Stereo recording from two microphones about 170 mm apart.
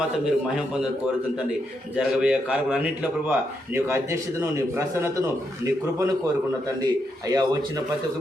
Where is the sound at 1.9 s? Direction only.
5° right (ahead or behind).